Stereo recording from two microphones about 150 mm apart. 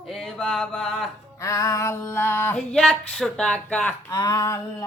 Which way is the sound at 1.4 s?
20° left (ahead or behind).